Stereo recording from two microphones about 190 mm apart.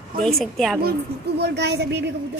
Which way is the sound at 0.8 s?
55° right (ahead or behind).